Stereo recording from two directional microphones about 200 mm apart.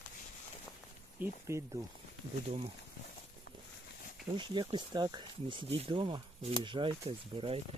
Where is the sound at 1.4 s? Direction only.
15° right (ahead or behind).